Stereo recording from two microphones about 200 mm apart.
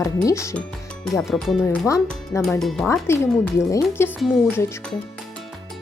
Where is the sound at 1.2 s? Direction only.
Centre (ahead or behind).